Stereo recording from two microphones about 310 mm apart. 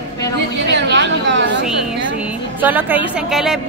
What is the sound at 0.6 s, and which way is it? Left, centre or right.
Chatter, right.